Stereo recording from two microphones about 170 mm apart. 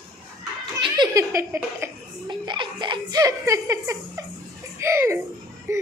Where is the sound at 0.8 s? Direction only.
25° right (ahead or behind).